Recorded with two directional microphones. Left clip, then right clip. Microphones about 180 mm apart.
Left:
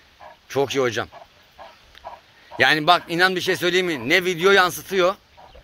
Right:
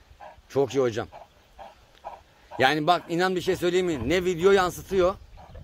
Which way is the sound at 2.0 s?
15° right (ahead or behind).